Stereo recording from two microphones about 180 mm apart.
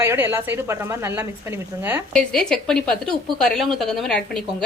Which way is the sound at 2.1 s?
5° left (ahead or behind).